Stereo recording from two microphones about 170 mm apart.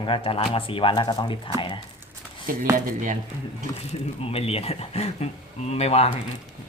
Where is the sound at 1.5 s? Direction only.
30° left (ahead or behind).